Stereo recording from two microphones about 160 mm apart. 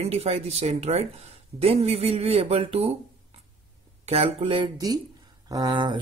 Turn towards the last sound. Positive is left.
turn(degrees=-30)  # may be behind; listen again after turning